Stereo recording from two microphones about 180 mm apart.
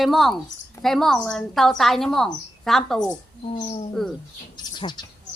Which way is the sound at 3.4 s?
35° left (ahead or behind).